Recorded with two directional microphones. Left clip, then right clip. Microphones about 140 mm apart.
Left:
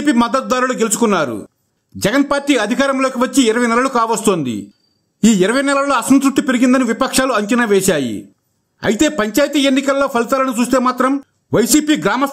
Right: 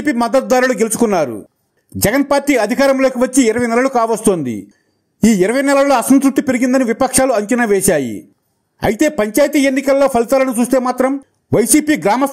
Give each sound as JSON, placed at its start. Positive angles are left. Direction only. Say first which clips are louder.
{"t": 0.0, "sound": "a man's voice", "louder": "right 1 dB", "side_deg": -25}
{"t": 6.0, "sound": "a man's voice", "louder": "right 1 dB", "side_deg": -10}
{"t": 6.3, "sound": "a man's voice", "louder": "even", "side_deg": -20}